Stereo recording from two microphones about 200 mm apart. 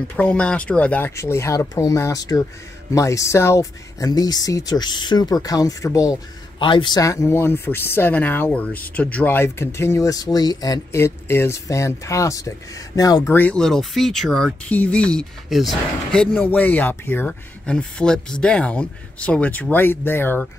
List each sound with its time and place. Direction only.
0.1 s speech: 5° left (ahead or behind)